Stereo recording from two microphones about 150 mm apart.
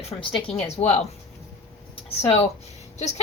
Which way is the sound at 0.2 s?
35° left (ahead or behind).